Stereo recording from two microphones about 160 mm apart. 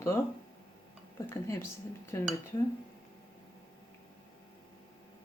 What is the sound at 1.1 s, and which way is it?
Speech, 15° left (ahead or behind).